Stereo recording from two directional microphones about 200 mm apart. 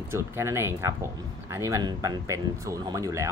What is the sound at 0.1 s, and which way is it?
Speech, 15° right (ahead or behind).